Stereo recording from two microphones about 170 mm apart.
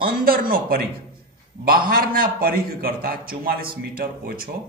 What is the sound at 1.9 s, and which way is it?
Speech, 60° right (ahead or behind).